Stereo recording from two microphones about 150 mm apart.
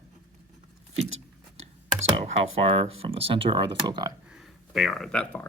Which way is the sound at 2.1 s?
40° right (ahead or behind).